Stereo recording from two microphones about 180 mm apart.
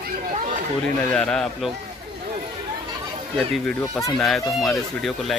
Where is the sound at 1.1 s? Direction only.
5° left (ahead or behind).